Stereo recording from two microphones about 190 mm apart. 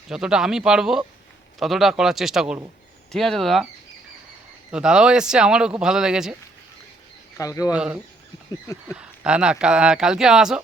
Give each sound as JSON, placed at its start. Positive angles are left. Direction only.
{"t": 0.1, "sound": "speech", "side_deg": -5}
{"t": 4.7, "sound": "speech", "side_deg": -5}
{"t": 7.3, "sound": "speech", "side_deg": 15}
{"t": 8.9, "sound": "speech", "side_deg": -5}